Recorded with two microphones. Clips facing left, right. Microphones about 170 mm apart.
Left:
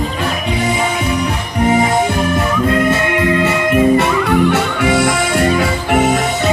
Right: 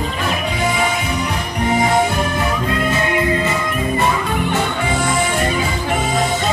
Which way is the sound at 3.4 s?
75° left (ahead or behind).